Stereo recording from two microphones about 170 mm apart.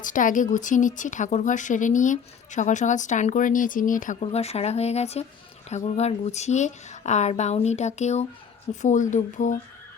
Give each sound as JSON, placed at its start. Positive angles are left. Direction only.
{"t": 0.0, "sound": "speech", "side_deg": 50}